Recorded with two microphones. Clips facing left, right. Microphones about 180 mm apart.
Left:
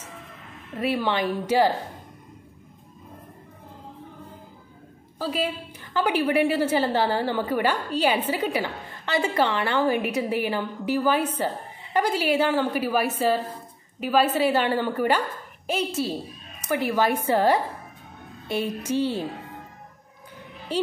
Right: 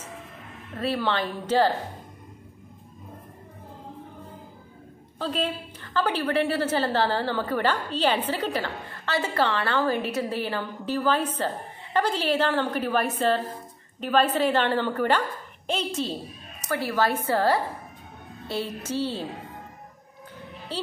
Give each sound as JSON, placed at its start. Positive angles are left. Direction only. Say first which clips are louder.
{"t": 0.7, "sound": "a woman's voice", "louder": "left 2 dB", "side_deg": 15}
{"t": 5.2, "sound": "a woman's voice", "louder": "left 1 dB", "side_deg": 5}